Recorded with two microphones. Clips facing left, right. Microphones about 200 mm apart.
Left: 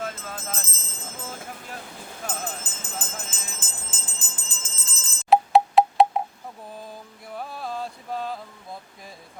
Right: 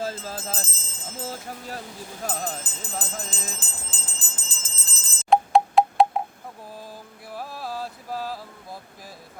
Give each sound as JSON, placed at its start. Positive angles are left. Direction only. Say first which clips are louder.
{"t": 0.0, "sound": "a sound", "louder": "right 3 dB", "side_deg": -30}
{"t": 2.2, "sound": "jingle bell", "louder": "right 3 dB", "side_deg": -35}
{"t": 5.3, "sound": "wind chime", "louder": "left 1 dB", "side_deg": 5}
{"t": 6.8, "sound": "music", "louder": "even", "side_deg": -5}